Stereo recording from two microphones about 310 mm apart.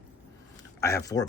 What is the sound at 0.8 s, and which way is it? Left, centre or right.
Speech, centre.